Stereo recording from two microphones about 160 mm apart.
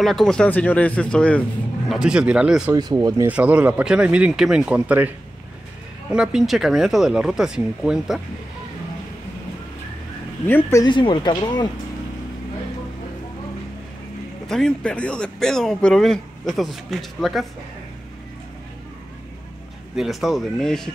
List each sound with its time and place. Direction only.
0.0 s speech: centre (ahead or behind)
1.9 s speech: 5° right (ahead or behind)
2.7 s speech: 25° right (ahead or behind)
3.3 s speech: 10° right (ahead or behind)
6.1 s speech: 5° right (ahead or behind)
10.4 s speech: 15° left (ahead or behind)
14.5 s speech: 5° left (ahead or behind)
20.0 s speech: centre (ahead or behind)